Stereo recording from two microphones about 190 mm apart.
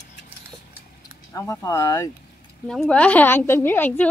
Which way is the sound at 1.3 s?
15° left (ahead or behind).